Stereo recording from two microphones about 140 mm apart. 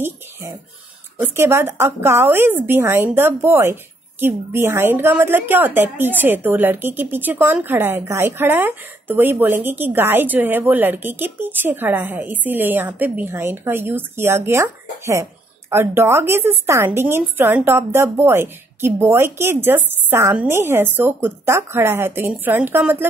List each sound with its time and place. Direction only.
1.1 s a woman's voice: 20° right (ahead or behind)